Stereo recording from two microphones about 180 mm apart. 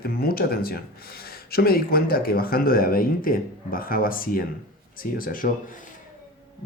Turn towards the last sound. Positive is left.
turn(degrees=50)  # may be behind; listen again after turning